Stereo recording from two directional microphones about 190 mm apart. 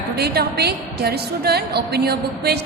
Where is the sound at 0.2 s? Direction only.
60° right (ahead or behind).